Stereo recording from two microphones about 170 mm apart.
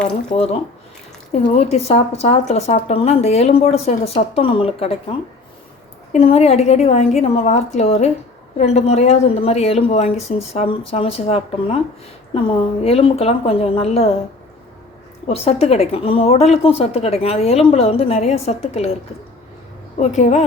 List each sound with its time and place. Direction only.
0.3 s speech: 40° left (ahead or behind)
6.1 s speech: 35° left (ahead or behind)
15.3 s speech: 35° left (ahead or behind)
20.0 s speech: 40° left (ahead or behind)